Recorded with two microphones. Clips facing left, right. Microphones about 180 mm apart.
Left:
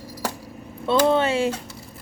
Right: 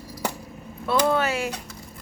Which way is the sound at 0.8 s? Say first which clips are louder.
Left 3 dB; 25° left (ahead or behind).